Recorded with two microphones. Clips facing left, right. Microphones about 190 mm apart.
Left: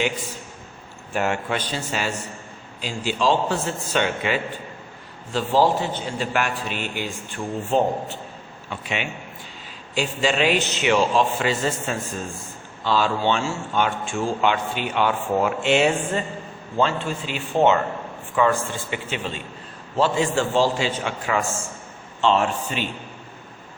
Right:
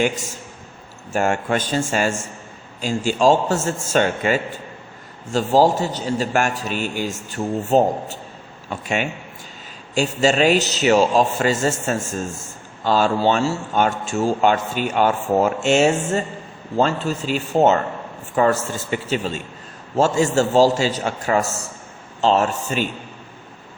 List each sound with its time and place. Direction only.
1.1 s a man's voice: 45° right (ahead or behind)
10.2 s a man's voice: 45° right (ahead or behind)